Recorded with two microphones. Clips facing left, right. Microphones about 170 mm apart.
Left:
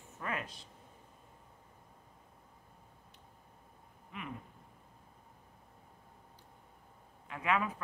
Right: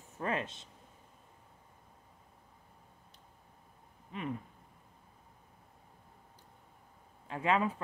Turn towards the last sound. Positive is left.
turn(degrees=-30)  # may be behind; listen again after turning